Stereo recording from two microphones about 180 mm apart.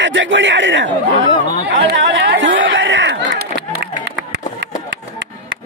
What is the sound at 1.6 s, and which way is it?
Chatter, 70° right (ahead or behind).